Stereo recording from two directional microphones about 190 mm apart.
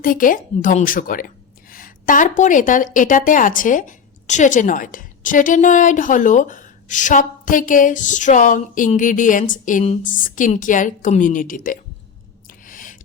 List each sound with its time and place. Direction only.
0.0 s a woman's voice: 45° left (ahead or behind)
12.6 s owl: 45° left (ahead or behind)